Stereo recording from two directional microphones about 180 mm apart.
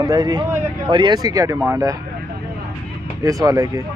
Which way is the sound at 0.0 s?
20° right (ahead or behind).